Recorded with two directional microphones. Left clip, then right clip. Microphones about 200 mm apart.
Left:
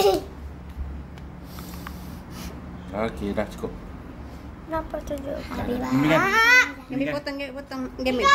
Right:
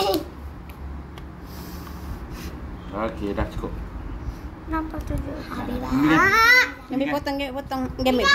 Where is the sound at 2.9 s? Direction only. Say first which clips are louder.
Even; 65° left (ahead or behind).